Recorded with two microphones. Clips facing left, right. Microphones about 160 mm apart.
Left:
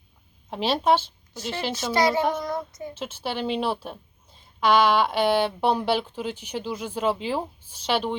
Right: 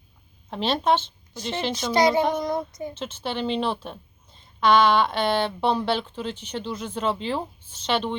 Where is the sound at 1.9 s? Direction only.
20° right (ahead or behind).